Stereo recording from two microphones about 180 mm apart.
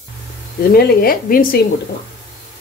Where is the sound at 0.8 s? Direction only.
55° left (ahead or behind).